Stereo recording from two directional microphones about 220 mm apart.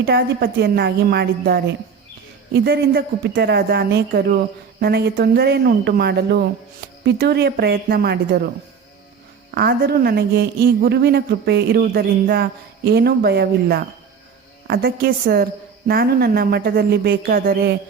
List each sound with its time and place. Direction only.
0.0 s a woman's voice: 45° right (ahead or behind)
9.6 s a woman's voice: 45° right (ahead or behind)